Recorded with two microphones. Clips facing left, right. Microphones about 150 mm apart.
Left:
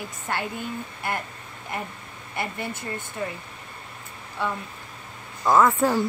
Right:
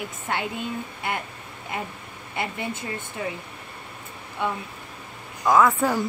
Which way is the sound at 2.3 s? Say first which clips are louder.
Right 1 dB; 20° right (ahead or behind).